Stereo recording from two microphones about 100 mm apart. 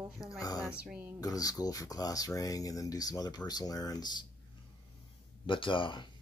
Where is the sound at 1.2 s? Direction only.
35° left (ahead or behind).